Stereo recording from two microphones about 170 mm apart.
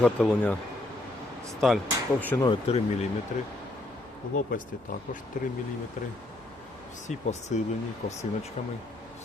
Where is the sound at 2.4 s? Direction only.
35° left (ahead or behind).